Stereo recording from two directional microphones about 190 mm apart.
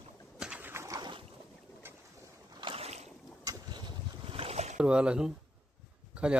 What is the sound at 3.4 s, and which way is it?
Boat, 20° right (ahead or behind).